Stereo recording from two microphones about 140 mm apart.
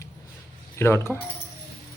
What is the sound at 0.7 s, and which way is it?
Speech, 20° left (ahead or behind).